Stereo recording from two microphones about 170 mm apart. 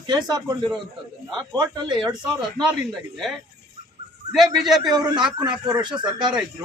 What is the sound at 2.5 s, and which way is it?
Speech, centre (ahead or behind).